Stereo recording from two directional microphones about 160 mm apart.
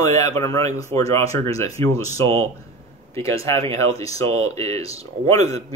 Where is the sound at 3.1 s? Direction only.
15° left (ahead or behind).